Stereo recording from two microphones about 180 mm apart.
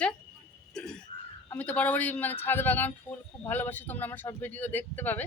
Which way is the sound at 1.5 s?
10° left (ahead or behind).